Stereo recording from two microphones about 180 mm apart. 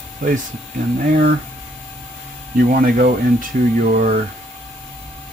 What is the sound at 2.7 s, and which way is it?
Speech, 55° right (ahead or behind).